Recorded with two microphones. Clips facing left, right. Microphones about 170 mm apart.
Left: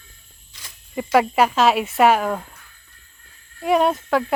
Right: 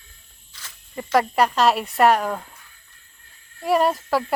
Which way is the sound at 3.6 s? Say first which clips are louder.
Left 1 dB; centre (ahead or behind).